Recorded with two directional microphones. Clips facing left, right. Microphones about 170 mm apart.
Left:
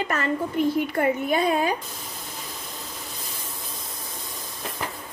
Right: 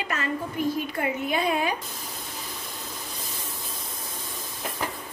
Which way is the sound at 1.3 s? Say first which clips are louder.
Left 3 dB; 40° left (ahead or behind).